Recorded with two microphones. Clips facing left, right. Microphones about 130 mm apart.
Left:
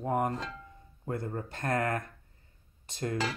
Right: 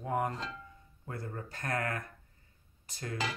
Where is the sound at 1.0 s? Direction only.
25° left (ahead or behind).